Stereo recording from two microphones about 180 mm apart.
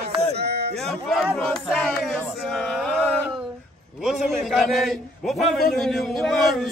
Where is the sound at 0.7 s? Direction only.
Centre (ahead or behind).